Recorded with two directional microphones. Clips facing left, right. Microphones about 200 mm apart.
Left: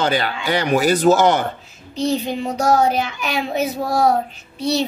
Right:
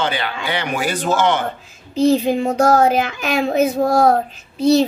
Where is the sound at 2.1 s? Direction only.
50° right (ahead or behind).